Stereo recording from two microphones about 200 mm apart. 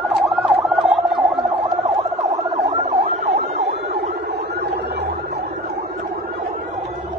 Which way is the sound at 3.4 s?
50° right (ahead or behind).